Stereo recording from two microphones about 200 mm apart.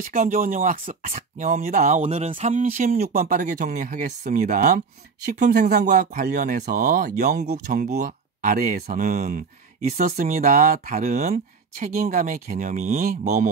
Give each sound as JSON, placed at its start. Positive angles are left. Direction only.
{"t": 0.1, "sound": "speech", "side_deg": -45}